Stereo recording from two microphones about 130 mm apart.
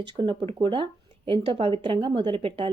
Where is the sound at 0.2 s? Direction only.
40° right (ahead or behind).